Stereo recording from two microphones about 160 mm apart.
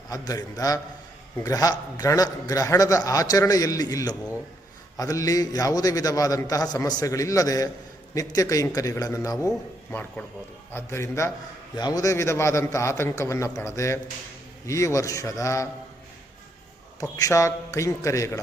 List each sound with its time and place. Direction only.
0.1 s a man's voice: 20° left (ahead or behind)
17.0 s a man's voice: 20° left (ahead or behind)